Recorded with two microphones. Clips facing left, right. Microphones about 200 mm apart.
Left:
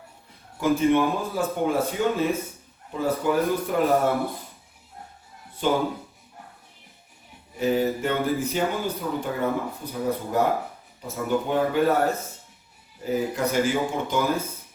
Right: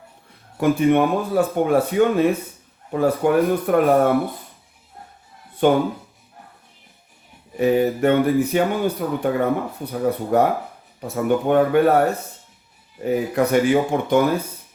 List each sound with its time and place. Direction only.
0.6 s speech: 60° right (ahead or behind)
5.6 s speech: 60° right (ahead or behind)
7.5 s speech: 60° right (ahead or behind)